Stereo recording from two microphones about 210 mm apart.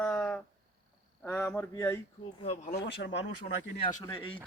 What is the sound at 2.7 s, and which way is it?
Speech, 55° left (ahead or behind).